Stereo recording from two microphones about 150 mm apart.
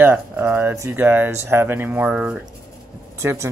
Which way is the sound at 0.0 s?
15° right (ahead or behind).